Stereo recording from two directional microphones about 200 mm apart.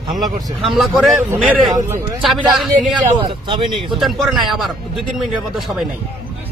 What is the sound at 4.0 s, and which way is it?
Speech, centre (ahead or behind).